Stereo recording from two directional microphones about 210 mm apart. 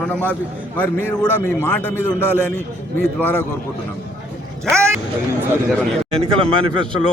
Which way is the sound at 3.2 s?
10° left (ahead or behind).